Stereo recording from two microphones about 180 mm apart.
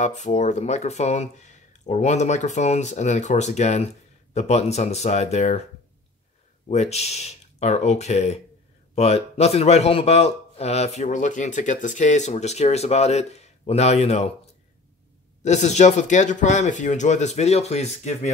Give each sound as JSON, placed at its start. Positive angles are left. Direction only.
{"t": 0.0, "sound": "speech", "side_deg": 40}
{"t": 6.7, "sound": "speech", "side_deg": 35}
{"t": 15.4, "sound": "speech", "side_deg": 40}